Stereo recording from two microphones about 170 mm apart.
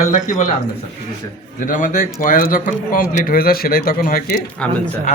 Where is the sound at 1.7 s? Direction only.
50° left (ahead or behind).